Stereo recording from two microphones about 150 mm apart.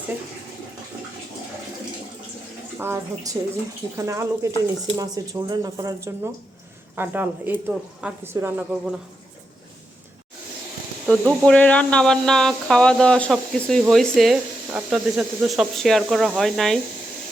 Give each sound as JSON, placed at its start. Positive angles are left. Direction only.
{"t": 2.7, "sound": "speech", "side_deg": -15}
{"t": 11.0, "sound": "speech", "side_deg": 0}